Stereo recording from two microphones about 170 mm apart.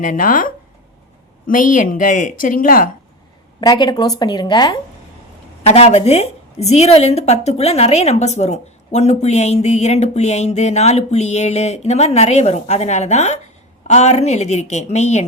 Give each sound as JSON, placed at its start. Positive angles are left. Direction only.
{"t": 0.0, "sound": "a woman's voice", "side_deg": 55}
{"t": 3.6, "sound": "speech", "side_deg": 25}
{"t": 5.6, "sound": "a woman's voice", "side_deg": 40}